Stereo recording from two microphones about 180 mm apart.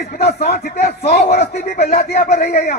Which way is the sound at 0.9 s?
40° left (ahead or behind).